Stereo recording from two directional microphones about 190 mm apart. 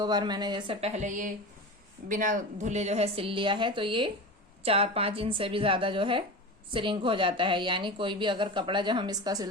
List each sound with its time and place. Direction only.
0.0 s a woman's voice: 20° right (ahead or behind)